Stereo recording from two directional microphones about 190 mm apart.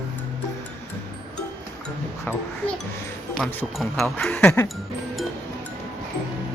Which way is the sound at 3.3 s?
5° left (ahead or behind).